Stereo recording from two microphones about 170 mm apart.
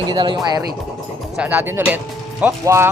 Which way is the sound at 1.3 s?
10° right (ahead or behind).